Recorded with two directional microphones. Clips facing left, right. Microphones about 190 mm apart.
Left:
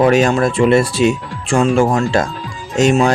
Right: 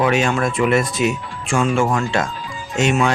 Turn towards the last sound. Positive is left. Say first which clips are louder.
# left 5 dB
turn(degrees=35)  # may be behind; listen again after turning